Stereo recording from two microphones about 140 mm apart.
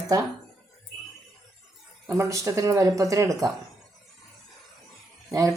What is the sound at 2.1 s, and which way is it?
Speech, 20° right (ahead or behind).